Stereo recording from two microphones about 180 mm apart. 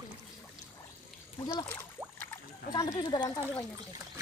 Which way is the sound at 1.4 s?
20° left (ahead or behind).